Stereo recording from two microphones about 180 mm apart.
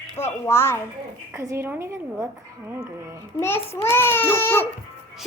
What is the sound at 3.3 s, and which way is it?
Baby cry, 15° left (ahead or behind).